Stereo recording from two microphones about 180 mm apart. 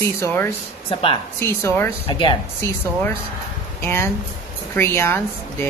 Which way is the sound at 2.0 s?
25° left (ahead or behind).